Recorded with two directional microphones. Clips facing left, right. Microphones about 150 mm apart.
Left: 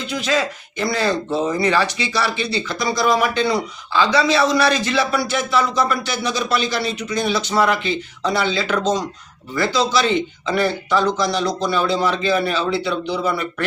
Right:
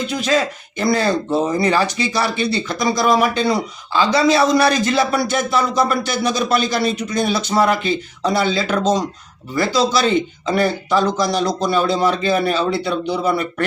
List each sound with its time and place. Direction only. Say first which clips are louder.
0.8 s speech: right 3 dB; 45° right (ahead or behind)